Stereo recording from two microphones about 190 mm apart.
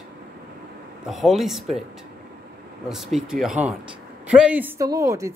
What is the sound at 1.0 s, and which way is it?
Speech, centre (ahead or behind).